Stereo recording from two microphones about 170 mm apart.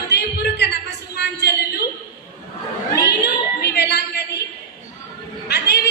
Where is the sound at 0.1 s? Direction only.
75° left (ahead or behind).